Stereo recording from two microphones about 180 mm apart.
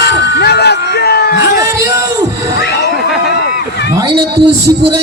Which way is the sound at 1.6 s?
15° right (ahead or behind).